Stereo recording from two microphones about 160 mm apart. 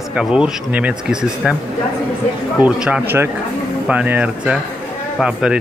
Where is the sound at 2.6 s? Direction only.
5° right (ahead or behind).